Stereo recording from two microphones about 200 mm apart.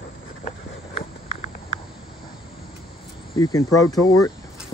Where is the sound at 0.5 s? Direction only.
35° left (ahead or behind).